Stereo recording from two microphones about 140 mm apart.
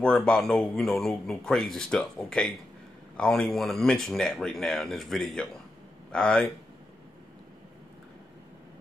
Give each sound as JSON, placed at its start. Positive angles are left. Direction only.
{"t": 0.0, "sound": "speech", "side_deg": 5}